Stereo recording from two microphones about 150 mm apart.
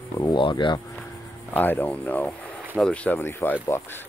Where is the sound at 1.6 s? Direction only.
10° left (ahead or behind).